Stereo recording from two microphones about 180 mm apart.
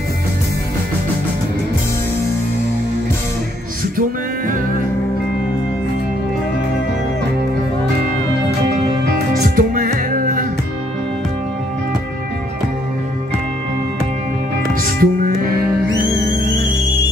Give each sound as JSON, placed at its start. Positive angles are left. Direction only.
{"t": 9.6, "sound": "music", "side_deg": -50}
{"t": 15.0, "sound": "music", "side_deg": -50}